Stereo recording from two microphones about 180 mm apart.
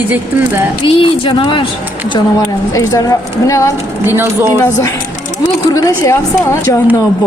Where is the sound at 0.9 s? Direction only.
30° left (ahead or behind).